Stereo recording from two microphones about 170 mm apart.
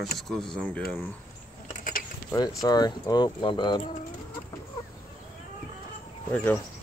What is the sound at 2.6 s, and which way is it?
Speech, 25° left (ahead or behind).